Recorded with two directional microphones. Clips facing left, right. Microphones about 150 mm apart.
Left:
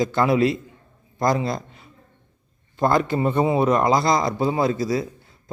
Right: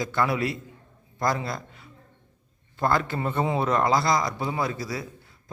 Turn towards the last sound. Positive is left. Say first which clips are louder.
# left 8 dB
turn(degrees=25)  # may be behind; listen again after turning